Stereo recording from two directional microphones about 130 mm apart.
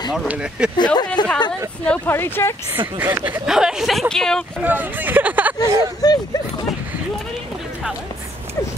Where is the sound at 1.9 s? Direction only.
15° left (ahead or behind).